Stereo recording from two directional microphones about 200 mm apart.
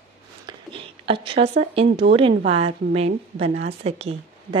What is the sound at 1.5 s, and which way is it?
A woman's voice, 35° right (ahead or behind).